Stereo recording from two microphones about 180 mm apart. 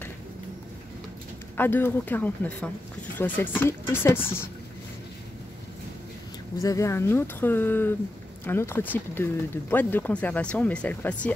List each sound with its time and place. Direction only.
1.6 s speech: 10° left (ahead or behind)
6.6 s speech: 20° left (ahead or behind)